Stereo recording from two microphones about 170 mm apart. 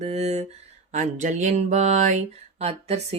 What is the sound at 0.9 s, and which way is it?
Speech, 45° right (ahead or behind).